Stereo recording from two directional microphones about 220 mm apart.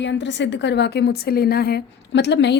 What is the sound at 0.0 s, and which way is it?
A woman's voice, 55° left (ahead or behind).